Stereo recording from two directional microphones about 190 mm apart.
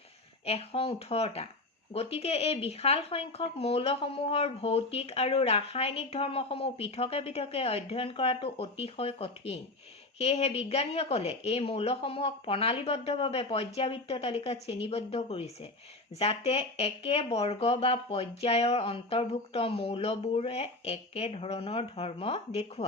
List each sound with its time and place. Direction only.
0.4 s speech: 30° left (ahead or behind)